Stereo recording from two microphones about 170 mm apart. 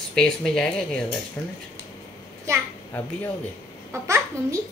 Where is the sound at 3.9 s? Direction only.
15° right (ahead or behind).